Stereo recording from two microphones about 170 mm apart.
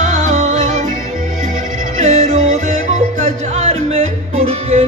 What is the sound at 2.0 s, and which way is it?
Music, 45° right (ahead or behind).